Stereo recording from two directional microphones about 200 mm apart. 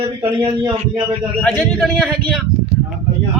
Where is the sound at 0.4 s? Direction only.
20° right (ahead or behind).